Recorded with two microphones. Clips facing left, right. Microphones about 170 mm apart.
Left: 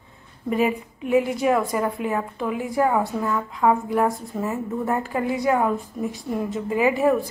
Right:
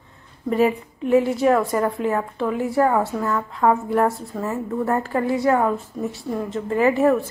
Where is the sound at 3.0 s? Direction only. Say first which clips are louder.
Right 1 dB; centre (ahead or behind).